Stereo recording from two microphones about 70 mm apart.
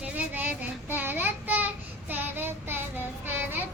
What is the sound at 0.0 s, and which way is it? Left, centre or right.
Child singing, right.